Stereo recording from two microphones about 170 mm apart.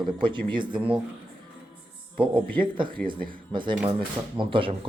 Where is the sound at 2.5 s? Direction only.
30° right (ahead or behind).